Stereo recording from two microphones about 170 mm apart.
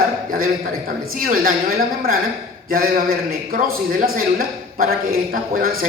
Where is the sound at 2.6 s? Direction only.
55° right (ahead or behind).